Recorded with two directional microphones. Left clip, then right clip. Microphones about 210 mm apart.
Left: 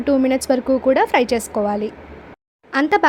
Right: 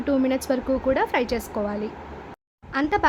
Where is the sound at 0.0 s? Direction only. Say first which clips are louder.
Left 6 dB; 20° left (ahead or behind).